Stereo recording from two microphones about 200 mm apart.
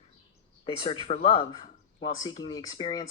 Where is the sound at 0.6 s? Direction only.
30° left (ahead or behind).